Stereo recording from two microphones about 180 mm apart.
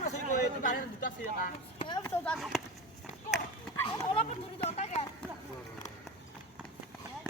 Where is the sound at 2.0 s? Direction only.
5° left (ahead or behind).